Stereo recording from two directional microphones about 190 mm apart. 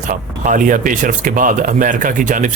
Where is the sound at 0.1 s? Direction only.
45° right (ahead or behind).